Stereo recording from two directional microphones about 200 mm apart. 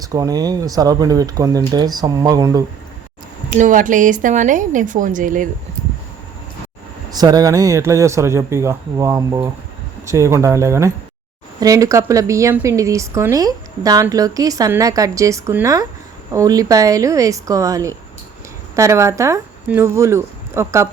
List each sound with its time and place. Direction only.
0.0 s speech: 15° right (ahead or behind)
3.5 s speech: 40° right (ahead or behind)
7.1 s a woman's voice: 20° right (ahead or behind)